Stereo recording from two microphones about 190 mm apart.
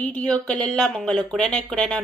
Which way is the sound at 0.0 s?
10° left (ahead or behind).